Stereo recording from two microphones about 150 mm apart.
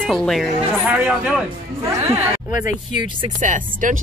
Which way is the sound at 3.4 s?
60° right (ahead or behind).